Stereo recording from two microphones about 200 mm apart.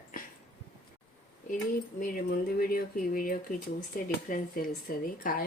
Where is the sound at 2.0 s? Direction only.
45° left (ahead or behind).